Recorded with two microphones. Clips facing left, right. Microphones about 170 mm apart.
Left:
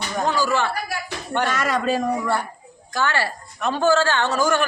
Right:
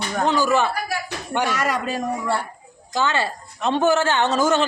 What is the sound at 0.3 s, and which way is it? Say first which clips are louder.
A woman's voice: right 3 dB; 20° right (ahead or behind).